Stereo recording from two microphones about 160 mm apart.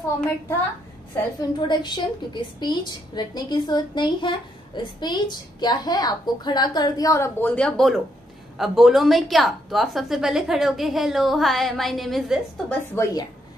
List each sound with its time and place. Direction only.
1.4 s a woman's voice: 25° left (ahead or behind); by 12.7 s centre (ahead or behind)
12.9 s a woman's voice: 20° left (ahead or behind)